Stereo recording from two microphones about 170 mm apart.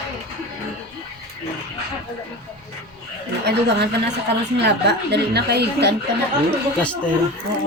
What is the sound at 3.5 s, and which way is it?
A woman's voice, 80° right.